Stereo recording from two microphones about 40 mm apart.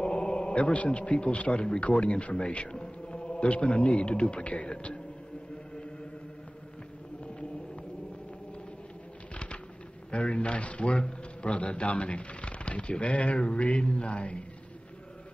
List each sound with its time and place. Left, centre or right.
0.0 s a man's voice: left
10.1 s a man's voice: left